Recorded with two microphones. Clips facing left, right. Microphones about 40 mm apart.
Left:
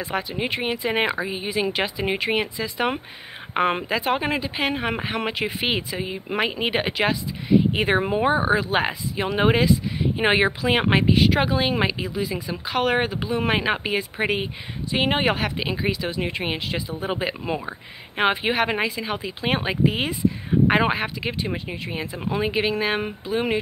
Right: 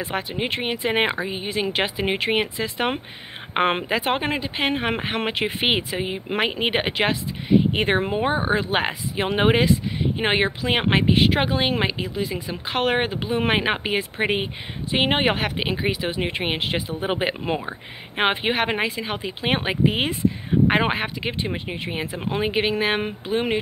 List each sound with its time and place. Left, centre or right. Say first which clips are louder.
0.0 s speech: even; centre
0.8 s speech: right 2 dB; right
1.1 s speech: even; centre
1.7 s speech: right 1 dB; right
4.1 s speech: even; centre
10.1 s speech: left 3 dB; centre
12.4 s speech: even; right
17.6 s speech: right 2 dB; centre